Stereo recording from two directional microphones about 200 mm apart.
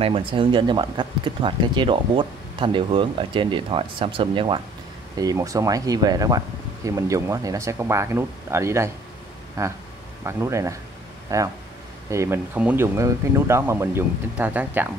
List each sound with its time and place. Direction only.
0.0 s speech: 25° right (ahead or behind); by 14.9 s 10° right (ahead or behind)